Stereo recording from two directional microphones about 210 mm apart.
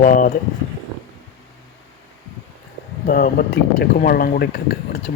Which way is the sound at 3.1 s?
45° left (ahead or behind).